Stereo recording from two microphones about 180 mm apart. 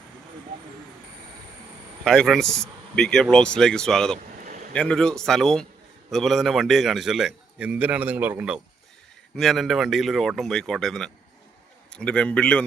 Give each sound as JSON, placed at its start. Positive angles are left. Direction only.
{"t": 2.0, "sound": "a man's voice", "side_deg": 0}
{"t": 4.4, "sound": "a sound", "side_deg": -45}
{"t": 4.7, "sound": "a man's voice", "side_deg": 5}